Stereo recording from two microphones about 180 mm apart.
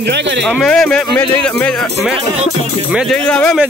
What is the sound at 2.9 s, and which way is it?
Speech, 5° left (ahead or behind).